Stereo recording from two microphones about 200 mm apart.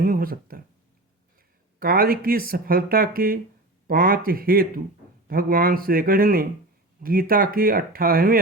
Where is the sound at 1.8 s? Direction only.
50° right (ahead or behind).